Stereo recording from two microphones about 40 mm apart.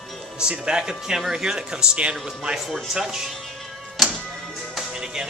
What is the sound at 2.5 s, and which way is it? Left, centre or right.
Speech, centre.